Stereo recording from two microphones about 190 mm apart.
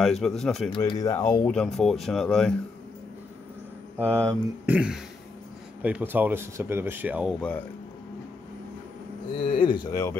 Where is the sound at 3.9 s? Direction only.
5° left (ahead or behind).